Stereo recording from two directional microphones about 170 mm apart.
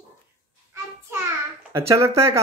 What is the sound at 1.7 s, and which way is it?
Speech, 15° right (ahead or behind).